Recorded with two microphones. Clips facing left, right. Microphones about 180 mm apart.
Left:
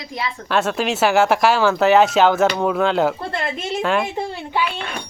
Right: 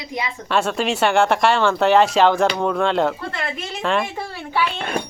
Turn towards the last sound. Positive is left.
turn(degrees=5)  # may be behind; listen again after turning